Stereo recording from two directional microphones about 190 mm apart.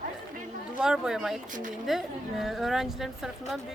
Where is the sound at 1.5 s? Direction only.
45° right (ahead or behind).